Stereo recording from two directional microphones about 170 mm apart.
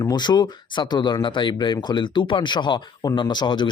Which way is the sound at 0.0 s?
25° left (ahead or behind).